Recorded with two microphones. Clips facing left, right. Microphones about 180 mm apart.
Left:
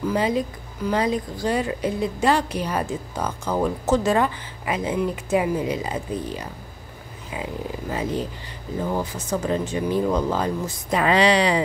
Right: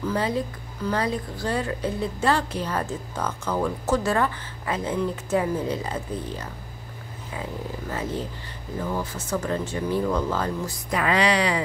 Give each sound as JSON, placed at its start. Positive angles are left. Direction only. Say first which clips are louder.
{"t": 0.0, "sound": "speech", "louder": "left 3 dB", "side_deg": 15}
{"t": 7.9, "sound": "speech", "louder": "left 4 dB", "side_deg": 15}